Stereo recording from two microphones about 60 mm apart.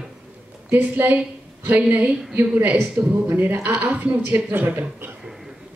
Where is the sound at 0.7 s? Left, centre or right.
Right.